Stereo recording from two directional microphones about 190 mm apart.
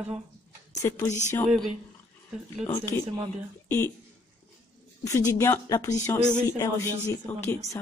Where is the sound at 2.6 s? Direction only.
15° left (ahead or behind).